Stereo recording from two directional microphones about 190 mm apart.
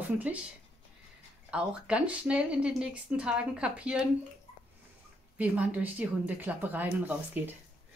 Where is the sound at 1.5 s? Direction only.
5° right (ahead or behind).